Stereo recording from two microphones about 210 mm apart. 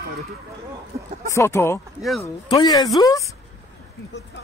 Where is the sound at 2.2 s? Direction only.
20° left (ahead or behind).